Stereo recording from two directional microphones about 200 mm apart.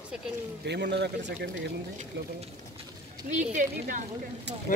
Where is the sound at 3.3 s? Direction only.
40° right (ahead or behind).